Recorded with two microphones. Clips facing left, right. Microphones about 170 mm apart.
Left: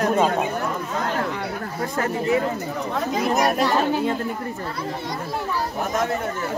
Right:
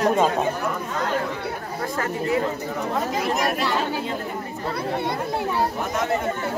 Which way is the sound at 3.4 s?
45° left (ahead or behind).